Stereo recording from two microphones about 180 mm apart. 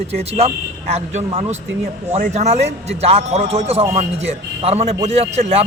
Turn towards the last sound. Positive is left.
turn(degrees=-35)  # may be behind; listen again after turning